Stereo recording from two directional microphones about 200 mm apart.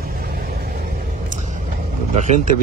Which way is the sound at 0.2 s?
50° right (ahead or behind).